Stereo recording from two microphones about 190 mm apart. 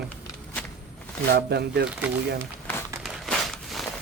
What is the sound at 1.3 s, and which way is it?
Speech, 60° right (ahead or behind).